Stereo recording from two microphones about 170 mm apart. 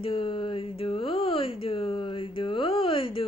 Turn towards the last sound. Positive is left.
turn(degrees=30)  # may be behind; listen again after turning